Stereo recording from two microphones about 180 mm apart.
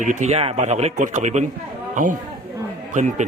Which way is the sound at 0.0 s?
40° right (ahead or behind).